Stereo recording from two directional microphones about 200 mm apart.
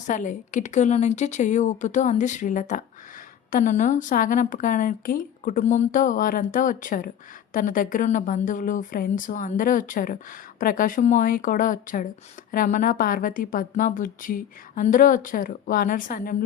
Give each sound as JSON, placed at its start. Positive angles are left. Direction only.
{"t": 0.1, "sound": "a woman's voice", "side_deg": 40}